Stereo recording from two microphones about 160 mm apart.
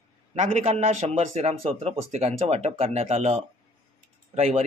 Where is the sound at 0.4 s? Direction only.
45° right (ahead or behind).